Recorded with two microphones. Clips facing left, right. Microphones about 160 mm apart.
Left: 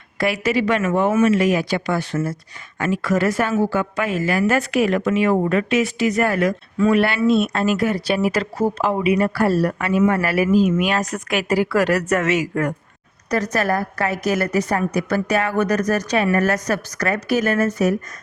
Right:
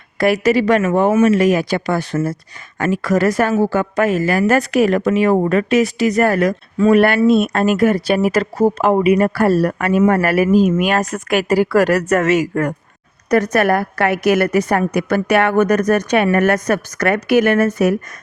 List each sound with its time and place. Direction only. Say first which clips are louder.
0.2 s a woman's voice: right 6 dB; 40° right (ahead or behind)
13.3 s a woman's voice: right 6 dB; 60° right (ahead or behind)
15.5 s a woman's voice: right 5 dB; 55° right (ahead or behind)